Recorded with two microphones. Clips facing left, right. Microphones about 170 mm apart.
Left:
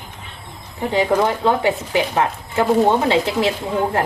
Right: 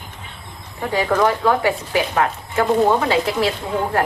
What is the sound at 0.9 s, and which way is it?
Speech, 20° left (ahead or behind).